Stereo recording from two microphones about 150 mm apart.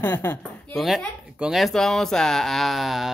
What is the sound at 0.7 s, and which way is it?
Speech, centre (ahead or behind).